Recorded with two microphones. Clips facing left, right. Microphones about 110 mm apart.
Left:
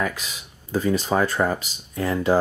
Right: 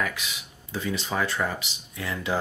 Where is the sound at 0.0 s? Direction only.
40° left (ahead or behind).